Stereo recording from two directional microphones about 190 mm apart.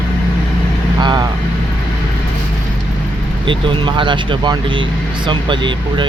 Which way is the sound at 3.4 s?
25° right (ahead or behind).